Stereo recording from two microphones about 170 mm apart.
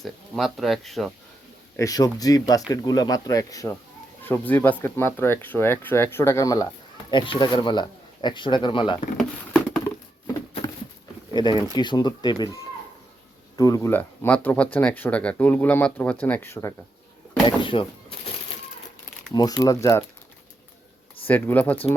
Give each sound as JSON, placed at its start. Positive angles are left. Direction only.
{"t": 0.0, "sound": "speech", "side_deg": 0}
{"t": 1.7, "sound": "speech", "side_deg": 20}
{"t": 11.3, "sound": "speech", "side_deg": 25}
{"t": 17.4, "sound": "speech", "side_deg": 30}
{"t": 19.3, "sound": "speech", "side_deg": 25}
{"t": 21.2, "sound": "speech", "side_deg": 10}